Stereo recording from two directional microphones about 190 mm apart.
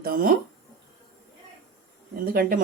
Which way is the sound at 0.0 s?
50° right (ahead or behind).